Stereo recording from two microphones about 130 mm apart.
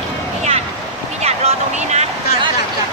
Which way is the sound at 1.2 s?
55° right (ahead or behind).